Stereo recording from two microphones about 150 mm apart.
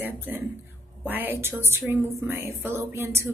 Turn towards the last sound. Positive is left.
turn(degrees=-15)  # may be behind; listen again after turning